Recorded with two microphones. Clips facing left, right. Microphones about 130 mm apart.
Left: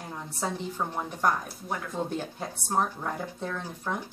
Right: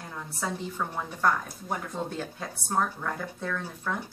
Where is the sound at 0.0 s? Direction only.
15° left (ahead or behind).